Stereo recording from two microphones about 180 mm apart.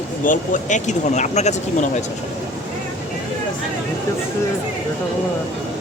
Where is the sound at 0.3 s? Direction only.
45° left (ahead or behind).